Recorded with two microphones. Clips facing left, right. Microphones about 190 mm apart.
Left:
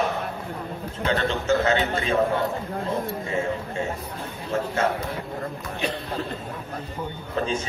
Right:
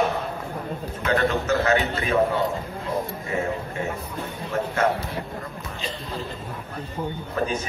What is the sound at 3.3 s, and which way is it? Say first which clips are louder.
Speech: right 1 dB; 25° left (ahead or behind).